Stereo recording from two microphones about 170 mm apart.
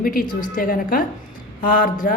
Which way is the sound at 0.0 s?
55° left (ahead or behind).